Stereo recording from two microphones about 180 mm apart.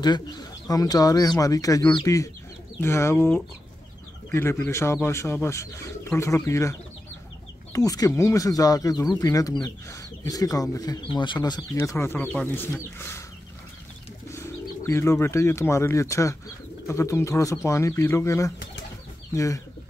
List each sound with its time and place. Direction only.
0.0 s speech: 20° left (ahead or behind)
14.3 s speech: 15° left (ahead or behind)